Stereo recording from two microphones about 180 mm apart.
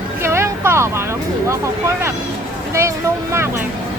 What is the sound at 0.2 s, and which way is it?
Vehicle, 15° right (ahead or behind).